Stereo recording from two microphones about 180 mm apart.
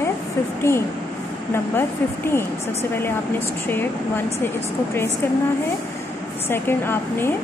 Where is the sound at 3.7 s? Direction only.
10° left (ahead or behind).